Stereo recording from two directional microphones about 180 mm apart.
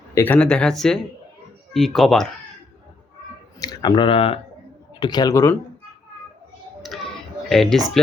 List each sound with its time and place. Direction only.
0.1 s speech: 10° left (ahead or behind)
3.6 s speech: 20° left (ahead or behind)
7.5 s speech: centre (ahead or behind)